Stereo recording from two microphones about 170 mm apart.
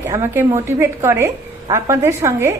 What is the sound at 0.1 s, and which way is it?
A woman's voice, 15° right (ahead or behind).